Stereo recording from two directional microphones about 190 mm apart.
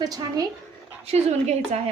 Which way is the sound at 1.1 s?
35° right (ahead or behind).